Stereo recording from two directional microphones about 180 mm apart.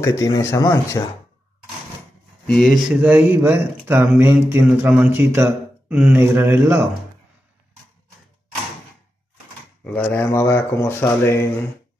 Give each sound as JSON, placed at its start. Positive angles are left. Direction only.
{"t": 0.0, "sound": "speech", "side_deg": 20}
{"t": 2.4, "sound": "speech", "side_deg": 5}
{"t": 9.8, "sound": "speech", "side_deg": 10}